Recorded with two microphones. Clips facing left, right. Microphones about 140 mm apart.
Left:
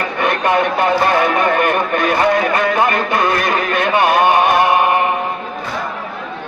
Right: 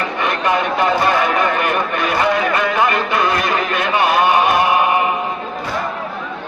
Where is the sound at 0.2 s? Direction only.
50° left (ahead or behind).